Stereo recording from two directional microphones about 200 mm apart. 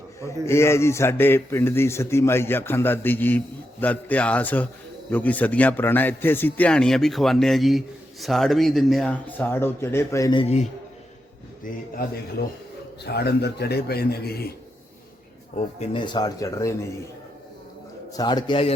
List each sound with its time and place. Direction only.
0.2 s a man's voice: 15° left (ahead or behind)
11.6 s a man's voice: 45° left (ahead or behind)
15.9 s speech: 25° left (ahead or behind)
18.1 s speech: 20° left (ahead or behind)